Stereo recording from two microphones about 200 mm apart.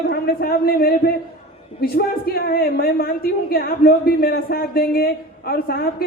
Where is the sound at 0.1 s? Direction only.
50° left (ahead or behind).